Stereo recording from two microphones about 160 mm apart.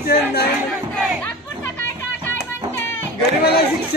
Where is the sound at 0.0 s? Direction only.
75° left (ahead or behind).